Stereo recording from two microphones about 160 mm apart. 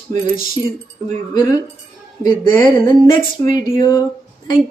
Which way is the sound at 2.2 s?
30° left (ahead or behind).